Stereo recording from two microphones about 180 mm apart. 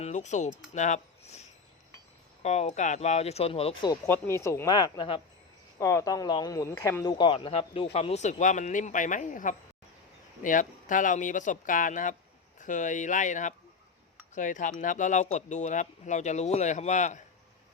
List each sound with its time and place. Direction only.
0.0 s speech: 40° left (ahead or behind)
4.0 s speech: 15° left (ahead or behind)
5.8 s speech: 15° left (ahead or behind); by 17.2 s 40° left (ahead or behind)